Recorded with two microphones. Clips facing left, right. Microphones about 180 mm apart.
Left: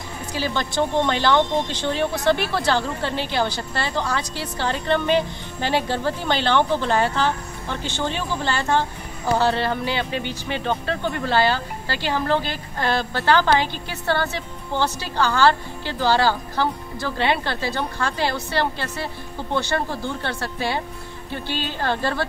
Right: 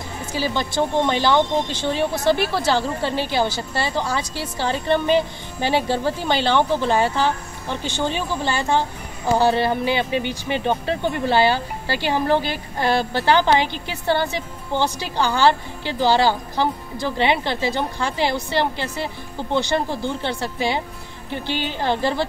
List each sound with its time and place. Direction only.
0.3 s speech: 10° right (ahead or behind)